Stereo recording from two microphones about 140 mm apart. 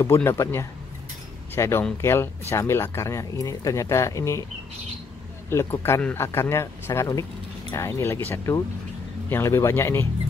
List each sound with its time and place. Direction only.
0.0 s speech: 15° left (ahead or behind)
5.5 s speech: 20° left (ahead or behind)